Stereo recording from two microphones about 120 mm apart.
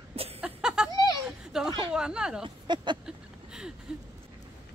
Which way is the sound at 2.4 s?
40° right (ahead or behind).